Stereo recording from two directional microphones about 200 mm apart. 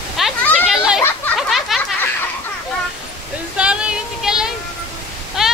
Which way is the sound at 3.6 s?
5° right (ahead or behind).